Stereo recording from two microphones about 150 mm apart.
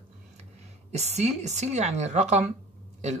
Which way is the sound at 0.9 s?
45° right (ahead or behind).